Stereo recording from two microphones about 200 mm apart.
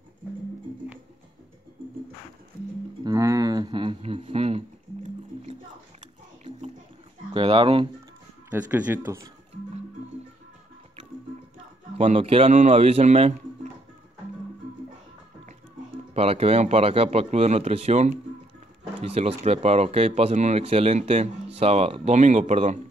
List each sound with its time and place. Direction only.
3.0 s a sound: 15° right (ahead or behind)
7.3 s speech: 25° right (ahead or behind)
8.5 s speech: 10° right (ahead or behind)
12.0 s speech: 30° right (ahead or behind)
16.1 s speech: 30° right (ahead or behind)